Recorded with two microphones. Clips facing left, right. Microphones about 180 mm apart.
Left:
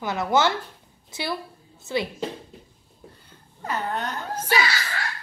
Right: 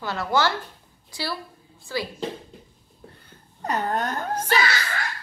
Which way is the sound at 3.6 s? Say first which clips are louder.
Right 3 dB; 40° right (ahead or behind).